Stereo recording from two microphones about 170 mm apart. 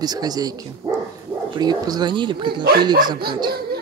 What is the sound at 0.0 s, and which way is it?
Speech, 25° right (ahead or behind).